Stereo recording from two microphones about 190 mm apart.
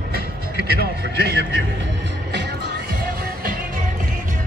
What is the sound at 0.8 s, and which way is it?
Speech, 55° right (ahead or behind).